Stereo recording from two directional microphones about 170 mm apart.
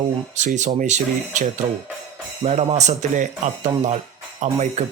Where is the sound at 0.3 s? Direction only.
45° right (ahead or behind).